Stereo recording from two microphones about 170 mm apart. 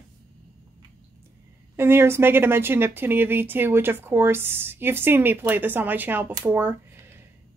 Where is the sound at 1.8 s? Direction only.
15° right (ahead or behind).